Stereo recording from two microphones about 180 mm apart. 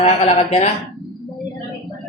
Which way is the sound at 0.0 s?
40° left (ahead or behind).